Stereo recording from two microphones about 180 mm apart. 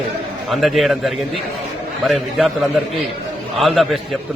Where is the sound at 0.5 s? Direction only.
Centre (ahead or behind).